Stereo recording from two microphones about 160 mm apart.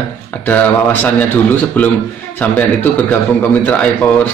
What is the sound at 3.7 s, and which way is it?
Speech, 10° left (ahead or behind).